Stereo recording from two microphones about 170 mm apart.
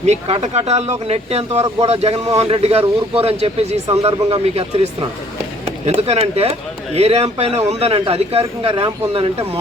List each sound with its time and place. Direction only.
0.0 s speech: 40° right (ahead or behind)